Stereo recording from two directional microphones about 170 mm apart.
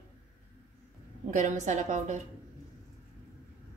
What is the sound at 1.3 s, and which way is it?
Speech, 45° right (ahead or behind).